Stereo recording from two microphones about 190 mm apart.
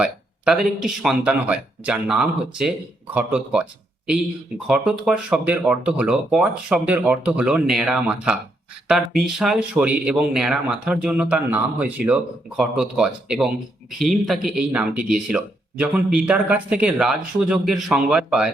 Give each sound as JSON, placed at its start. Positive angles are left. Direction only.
{"t": 0.0, "sound": "speech", "side_deg": -5}